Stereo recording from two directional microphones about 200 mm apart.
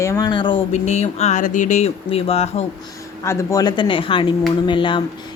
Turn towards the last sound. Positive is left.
turn(degrees=25)  # may be behind; listen again after turning